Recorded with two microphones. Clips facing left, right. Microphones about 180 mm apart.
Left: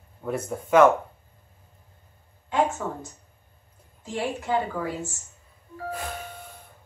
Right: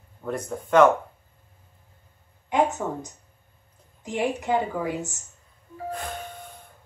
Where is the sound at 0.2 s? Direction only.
5° left (ahead or behind).